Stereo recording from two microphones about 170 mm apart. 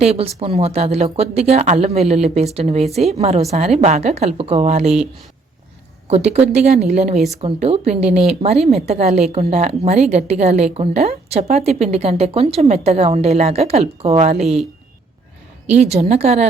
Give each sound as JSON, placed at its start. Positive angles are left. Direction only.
{"t": 0.0, "sound": "speech", "side_deg": -35}
{"t": 6.1, "sound": "speech", "side_deg": -40}
{"t": 15.7, "sound": "speech", "side_deg": -40}